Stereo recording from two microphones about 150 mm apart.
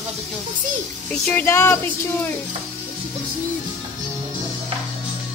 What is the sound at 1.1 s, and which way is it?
Speech, 10° left (ahead or behind).